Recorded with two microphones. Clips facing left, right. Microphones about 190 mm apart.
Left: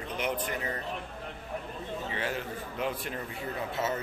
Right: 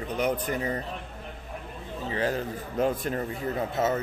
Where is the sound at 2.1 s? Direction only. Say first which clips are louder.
Right 9 dB; 35° right (ahead or behind).